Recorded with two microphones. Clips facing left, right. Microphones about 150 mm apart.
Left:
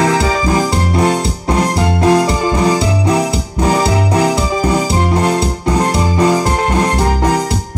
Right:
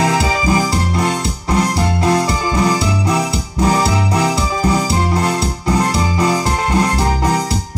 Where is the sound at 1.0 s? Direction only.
30° left (ahead or behind).